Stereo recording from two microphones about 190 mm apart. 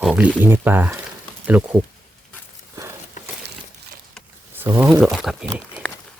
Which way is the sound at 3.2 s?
40° left (ahead or behind).